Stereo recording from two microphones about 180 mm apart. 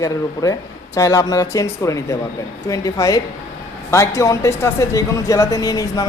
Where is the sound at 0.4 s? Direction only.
20° left (ahead or behind).